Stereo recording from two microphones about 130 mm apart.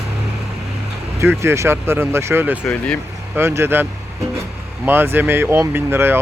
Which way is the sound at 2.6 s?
10° left (ahead or behind).